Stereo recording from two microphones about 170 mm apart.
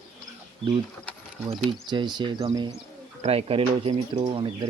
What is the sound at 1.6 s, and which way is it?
Speech, 30° right (ahead or behind).